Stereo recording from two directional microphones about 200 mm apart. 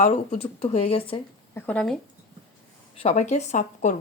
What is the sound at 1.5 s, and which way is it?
Speech, 5° left (ahead or behind).